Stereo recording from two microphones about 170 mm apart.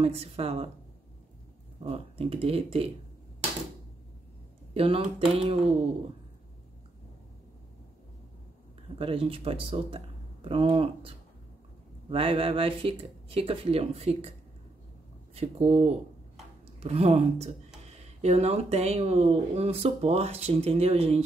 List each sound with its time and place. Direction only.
0.0 s speech: 35° right (ahead or behind)
1.8 s speech: 35° right (ahead or behind)
4.7 s speech: 35° right (ahead or behind)
8.9 s speech: 35° right (ahead or behind)
15.3 s speech: 40° right (ahead or behind)